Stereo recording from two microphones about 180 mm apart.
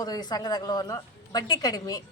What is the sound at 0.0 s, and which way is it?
Speech, 20° left (ahead or behind).